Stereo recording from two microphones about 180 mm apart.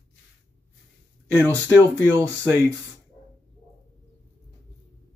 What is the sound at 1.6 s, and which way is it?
Speech, 15° right (ahead or behind).